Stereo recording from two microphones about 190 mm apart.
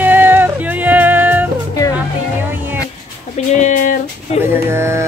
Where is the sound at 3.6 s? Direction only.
40° left (ahead or behind).